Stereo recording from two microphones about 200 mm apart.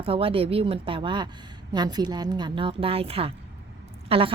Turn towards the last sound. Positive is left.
turn(degrees=-30)  # may be behind; listen again after turning